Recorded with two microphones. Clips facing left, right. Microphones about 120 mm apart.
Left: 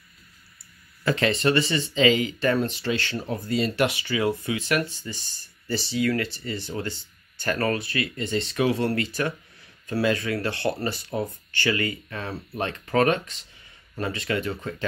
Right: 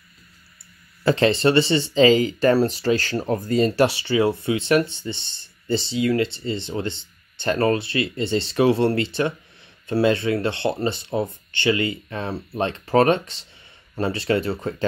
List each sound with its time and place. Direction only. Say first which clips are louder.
1.0 s speech: right 5 dB; 30° right (ahead or behind)